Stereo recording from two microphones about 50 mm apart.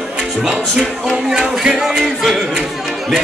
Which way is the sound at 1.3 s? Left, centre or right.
Centre.